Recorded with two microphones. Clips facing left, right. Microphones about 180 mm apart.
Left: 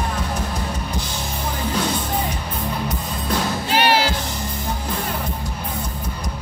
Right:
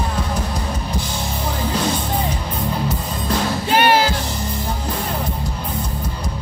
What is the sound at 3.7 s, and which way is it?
Music, 50° right (ahead or behind).